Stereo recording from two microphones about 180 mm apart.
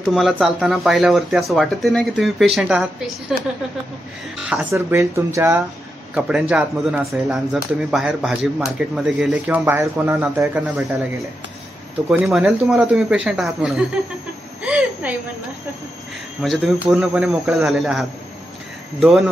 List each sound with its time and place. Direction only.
0.0 s speech: centre (ahead or behind)
4.4 s speech: 5° right (ahead or behind)
4.7 s speech: 15° right (ahead or behind)
6.1 s speech: 5° right (ahead or behind)
10.5 s speech: 5° right (ahead or behind)
12.1 s a woman's voice: 5° right (ahead or behind)
16.4 s speech: centre (ahead or behind)